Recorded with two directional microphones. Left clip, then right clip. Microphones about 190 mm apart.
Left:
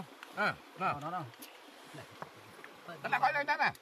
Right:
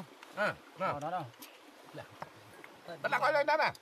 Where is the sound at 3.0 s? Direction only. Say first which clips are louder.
Right 2 dB; 70° right (ahead or behind).